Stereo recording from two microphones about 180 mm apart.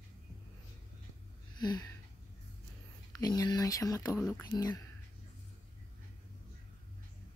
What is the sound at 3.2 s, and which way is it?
Speech, 20° left (ahead or behind).